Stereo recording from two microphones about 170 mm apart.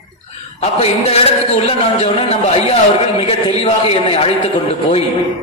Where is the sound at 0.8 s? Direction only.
35° left (ahead or behind).